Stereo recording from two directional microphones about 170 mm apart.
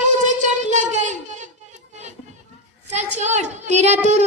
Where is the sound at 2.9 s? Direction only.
45° right (ahead or behind).